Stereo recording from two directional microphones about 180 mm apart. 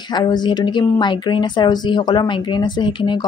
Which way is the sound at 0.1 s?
25° left (ahead or behind).